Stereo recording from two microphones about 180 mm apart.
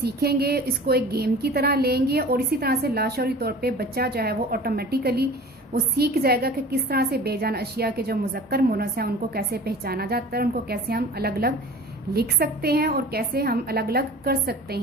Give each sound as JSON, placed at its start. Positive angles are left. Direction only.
{"t": 0.0, "sound": "a woman's voice", "side_deg": -60}